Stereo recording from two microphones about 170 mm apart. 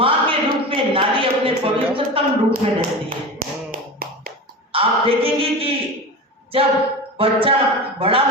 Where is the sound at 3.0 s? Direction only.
55° right (ahead or behind).